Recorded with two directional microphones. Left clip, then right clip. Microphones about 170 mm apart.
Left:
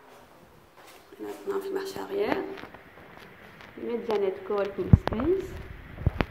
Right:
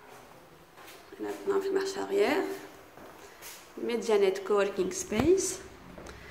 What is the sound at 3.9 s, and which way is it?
Speech, 10° right (ahead or behind).